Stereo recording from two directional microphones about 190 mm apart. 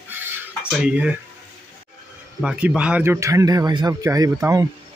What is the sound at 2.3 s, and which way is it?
Speech, 5° right (ahead or behind).